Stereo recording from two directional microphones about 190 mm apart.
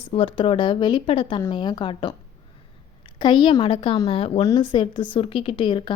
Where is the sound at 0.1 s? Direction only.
30° left (ahead or behind).